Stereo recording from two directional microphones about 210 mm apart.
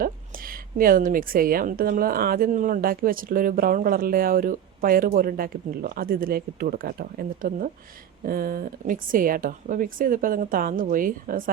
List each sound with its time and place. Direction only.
0.0 s a woman's voice: 45° right (ahead or behind)